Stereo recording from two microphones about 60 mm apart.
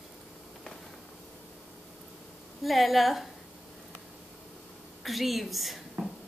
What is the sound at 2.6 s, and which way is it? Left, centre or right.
Speech, centre.